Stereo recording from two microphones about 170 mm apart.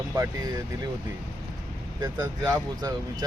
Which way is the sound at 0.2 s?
20° right (ahead or behind).